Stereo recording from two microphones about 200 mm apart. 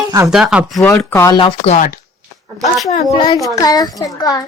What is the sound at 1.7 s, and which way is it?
Speech, 40° left (ahead or behind).